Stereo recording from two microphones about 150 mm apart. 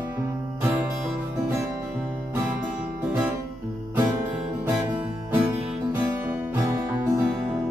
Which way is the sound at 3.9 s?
15° right (ahead or behind).